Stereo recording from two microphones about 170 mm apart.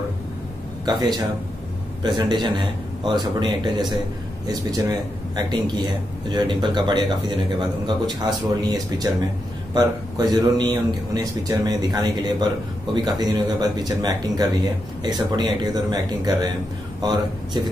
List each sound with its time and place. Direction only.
0.8 s a man's voice: 25° right (ahead or behind)